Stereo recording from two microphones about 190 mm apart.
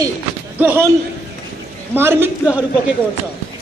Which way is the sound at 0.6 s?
10° right (ahead or behind).